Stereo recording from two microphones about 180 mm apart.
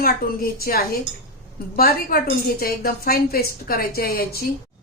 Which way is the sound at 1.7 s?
55° left (ahead or behind).